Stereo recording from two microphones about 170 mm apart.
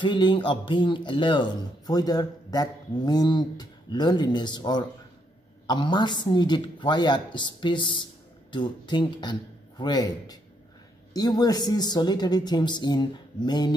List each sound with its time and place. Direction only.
0.0 s speech: 25° left (ahead or behind)